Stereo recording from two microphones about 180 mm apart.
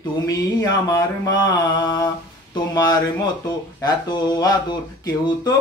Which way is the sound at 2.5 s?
20° left (ahead or behind).